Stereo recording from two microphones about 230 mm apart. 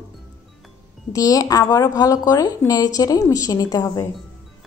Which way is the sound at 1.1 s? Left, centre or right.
Centre.